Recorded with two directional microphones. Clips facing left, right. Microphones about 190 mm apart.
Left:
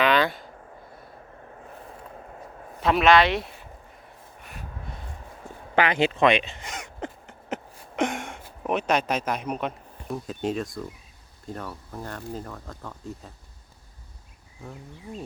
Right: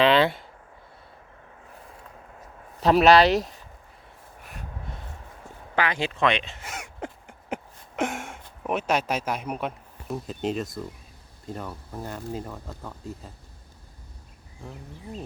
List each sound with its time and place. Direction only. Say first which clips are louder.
0.0 s a sound: right 3 dB; 25° right (ahead or behind)
2.8 s speech: right 2 dB; 35° right (ahead or behind)
5.7 s speech: left 4 dB; 20° left (ahead or behind)
6.4 s a sound: left 1 dB; 5° right (ahead or behind)
8.6 s speech: left 1 dB; 5° right (ahead or behind)
11.6 s speech: right 1 dB; 15° right (ahead or behind)
14.6 s speech: even; centre (ahead or behind)